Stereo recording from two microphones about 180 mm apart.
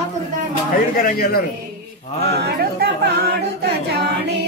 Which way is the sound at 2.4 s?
65° right (ahead or behind).